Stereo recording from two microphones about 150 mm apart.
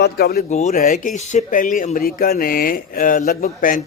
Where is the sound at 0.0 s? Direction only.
90° left.